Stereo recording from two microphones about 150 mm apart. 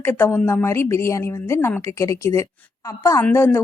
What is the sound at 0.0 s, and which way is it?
A woman's voice, 15° left (ahead or behind).